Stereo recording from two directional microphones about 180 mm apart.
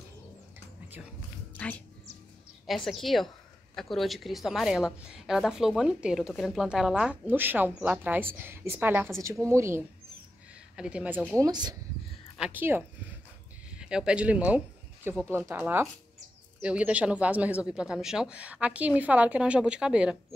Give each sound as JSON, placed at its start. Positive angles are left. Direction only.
{"t": 1.5, "sound": "a sound", "side_deg": 10}
{"t": 2.6, "sound": "a woman's voice", "side_deg": 0}
{"t": 11.3, "sound": "speech", "side_deg": -20}
{"t": 12.4, "sound": "a woman's voice", "side_deg": -10}